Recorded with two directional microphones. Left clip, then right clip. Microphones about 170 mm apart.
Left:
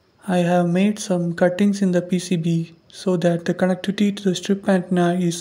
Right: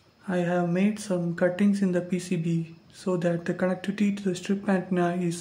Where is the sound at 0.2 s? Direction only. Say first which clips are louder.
Left 8 dB; 35° left (ahead or behind).